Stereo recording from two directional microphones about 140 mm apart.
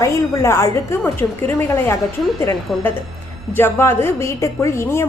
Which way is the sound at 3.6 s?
15° left (ahead or behind).